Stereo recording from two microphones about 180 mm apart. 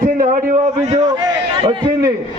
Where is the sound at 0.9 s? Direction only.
20° right (ahead or behind).